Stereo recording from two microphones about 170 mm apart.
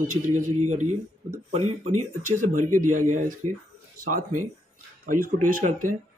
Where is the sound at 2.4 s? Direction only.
50° right (ahead or behind).